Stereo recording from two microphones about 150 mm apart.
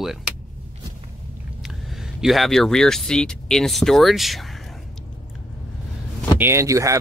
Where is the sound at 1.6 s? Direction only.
Centre (ahead or behind).